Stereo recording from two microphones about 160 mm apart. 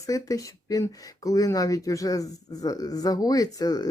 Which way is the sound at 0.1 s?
20° left (ahead or behind).